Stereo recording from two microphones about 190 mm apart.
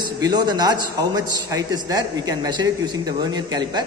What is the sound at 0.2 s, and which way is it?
A man's voice, 20° right (ahead or behind).